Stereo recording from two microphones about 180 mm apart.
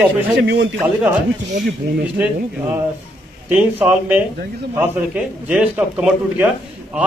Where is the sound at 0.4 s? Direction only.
80° right.